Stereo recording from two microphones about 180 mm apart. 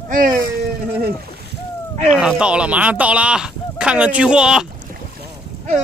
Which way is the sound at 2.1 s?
5° right (ahead or behind).